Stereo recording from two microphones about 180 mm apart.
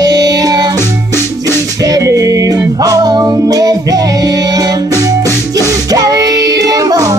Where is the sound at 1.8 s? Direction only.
20° right (ahead or behind).